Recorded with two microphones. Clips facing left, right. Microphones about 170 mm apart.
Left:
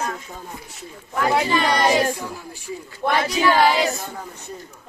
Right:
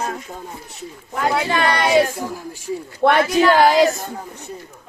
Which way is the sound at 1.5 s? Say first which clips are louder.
Right 1 dB; 60° right (ahead or behind).